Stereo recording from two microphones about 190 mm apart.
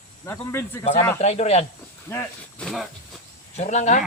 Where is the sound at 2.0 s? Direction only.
10° left (ahead or behind).